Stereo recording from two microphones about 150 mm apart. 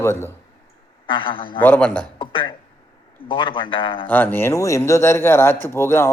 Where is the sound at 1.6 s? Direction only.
10° left (ahead or behind).